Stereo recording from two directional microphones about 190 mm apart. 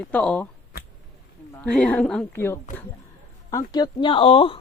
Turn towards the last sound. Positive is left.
turn(degrees=30)  # may be behind; listen again after turning